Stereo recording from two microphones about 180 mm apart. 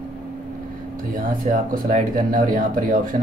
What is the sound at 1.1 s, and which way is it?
Speech, 50° right (ahead or behind).